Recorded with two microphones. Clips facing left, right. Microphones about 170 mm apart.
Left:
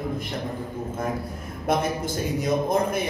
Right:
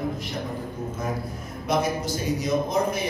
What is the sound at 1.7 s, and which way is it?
Speech, 55° left (ahead or behind).